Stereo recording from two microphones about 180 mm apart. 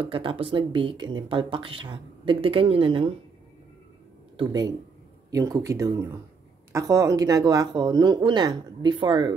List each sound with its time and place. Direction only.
0.0 s speech: 30° right (ahead or behind)
4.4 s speech: 20° right (ahead or behind)